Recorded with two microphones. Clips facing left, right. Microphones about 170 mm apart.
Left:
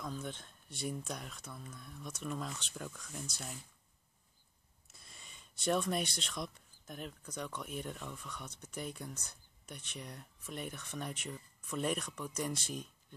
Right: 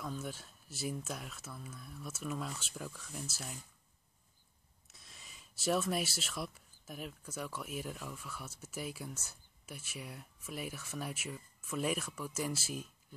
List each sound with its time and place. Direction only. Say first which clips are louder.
0.0 s speech: right 1 dB; 5° right (ahead or behind)
4.8 s speech: even; centre (ahead or behind)